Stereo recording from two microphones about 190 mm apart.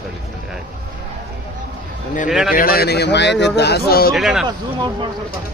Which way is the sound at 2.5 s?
50° left (ahead or behind).